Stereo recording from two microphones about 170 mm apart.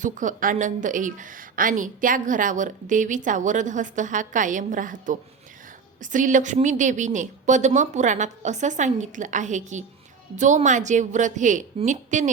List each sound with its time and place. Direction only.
0.0 s speech: 50° right (ahead or behind)